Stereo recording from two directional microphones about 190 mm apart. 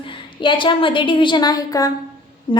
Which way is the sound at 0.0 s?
25° left (ahead or behind).